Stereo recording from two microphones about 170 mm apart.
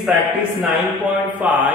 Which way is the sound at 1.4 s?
10° right (ahead or behind).